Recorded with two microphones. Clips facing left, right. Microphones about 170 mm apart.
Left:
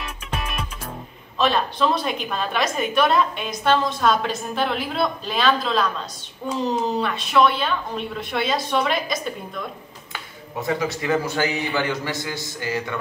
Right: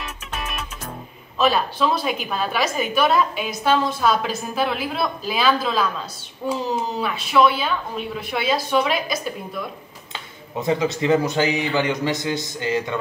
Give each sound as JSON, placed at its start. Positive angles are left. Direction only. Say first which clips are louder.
{"t": 0.0, "sound": "music", "louder": "left 1 dB", "side_deg": -5}
{"t": 1.4, "sound": "a woman's voice", "louder": "right 1 dB", "side_deg": -5}
{"t": 10.1, "sound": "speech", "louder": "right 2 dB", "side_deg": -20}